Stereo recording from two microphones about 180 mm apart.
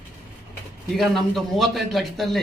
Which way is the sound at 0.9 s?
Centre (ahead or behind).